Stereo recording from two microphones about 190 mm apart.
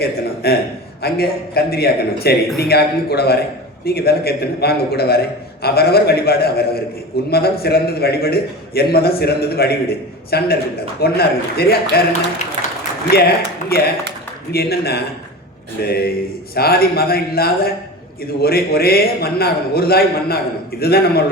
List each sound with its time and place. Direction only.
0.0 s a man's voice: 55° left (ahead or behind)
13.1 s a man's voice: 55° left (ahead or behind)